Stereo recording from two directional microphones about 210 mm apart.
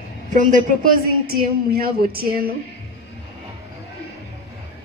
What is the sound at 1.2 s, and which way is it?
A man's voice, 45° right (ahead or behind).